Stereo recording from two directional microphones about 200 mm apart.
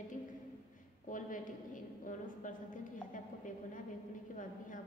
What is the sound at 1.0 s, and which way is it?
A woman's voice, 40° left (ahead or behind).